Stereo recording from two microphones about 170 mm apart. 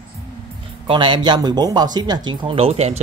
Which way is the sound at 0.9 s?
30° right (ahead or behind).